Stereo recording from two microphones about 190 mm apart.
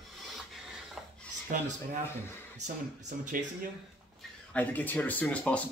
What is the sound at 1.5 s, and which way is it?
Speech, 45° right (ahead or behind).